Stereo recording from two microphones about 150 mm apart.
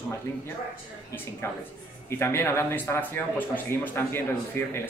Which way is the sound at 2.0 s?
15° left (ahead or behind).